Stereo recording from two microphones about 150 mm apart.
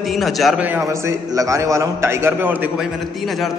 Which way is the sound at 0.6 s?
15° right (ahead or behind).